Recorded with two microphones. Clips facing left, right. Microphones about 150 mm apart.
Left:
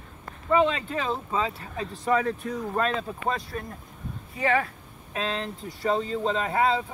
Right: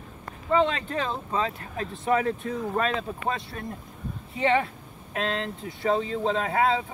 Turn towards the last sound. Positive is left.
turn(degrees=0)  # may be behind; listen again after turning